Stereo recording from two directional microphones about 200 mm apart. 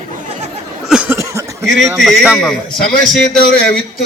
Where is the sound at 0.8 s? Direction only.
5° right (ahead or behind).